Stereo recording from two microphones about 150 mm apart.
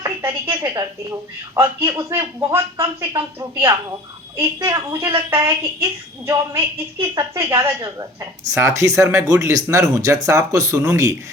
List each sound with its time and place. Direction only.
0.0 s a woman's voice: 15° right (ahead or behind)